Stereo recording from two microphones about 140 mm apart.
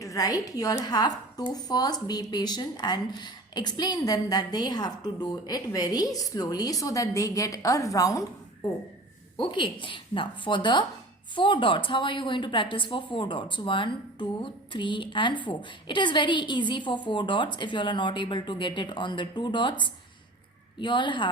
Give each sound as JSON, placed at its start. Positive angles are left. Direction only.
{"t": 0.0, "sound": "a woman's voice", "side_deg": 25}
{"t": 9.4, "sound": "a woman's voice", "side_deg": 35}